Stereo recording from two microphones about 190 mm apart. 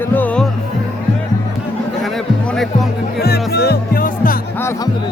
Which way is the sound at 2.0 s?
Centre (ahead or behind).